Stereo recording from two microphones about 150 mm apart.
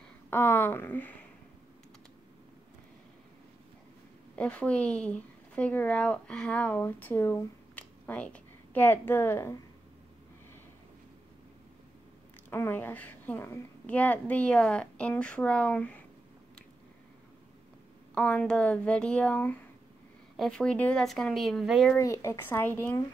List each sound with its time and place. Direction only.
0.3 s speech: 15° left (ahead or behind)
4.4 s speech: 10° left (ahead or behind)
12.4 s a woman's voice: 15° left (ahead or behind)
18.1 s a woman's voice: 10° left (ahead or behind)
21.9 s a woman's voice: 20° left (ahead or behind)